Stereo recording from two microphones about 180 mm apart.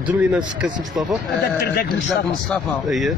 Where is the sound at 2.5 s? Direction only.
Centre (ahead or behind).